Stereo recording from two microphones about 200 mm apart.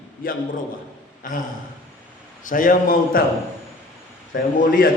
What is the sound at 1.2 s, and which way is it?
A man's voice, 45° left (ahead or behind).